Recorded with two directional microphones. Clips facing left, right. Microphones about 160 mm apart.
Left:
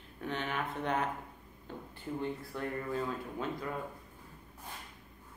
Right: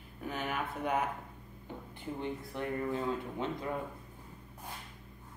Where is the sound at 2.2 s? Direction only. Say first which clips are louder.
Right 1 dB; 20° right (ahead or behind).